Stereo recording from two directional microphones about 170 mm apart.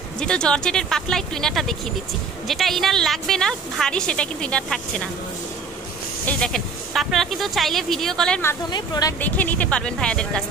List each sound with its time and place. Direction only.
0.2 s a woman's voice: 5° left (ahead or behind)
6.2 s a woman's voice: 5° left (ahead or behind)
8.6 s speech: 25° left (ahead or behind)
9.2 s speech: 10° left (ahead or behind)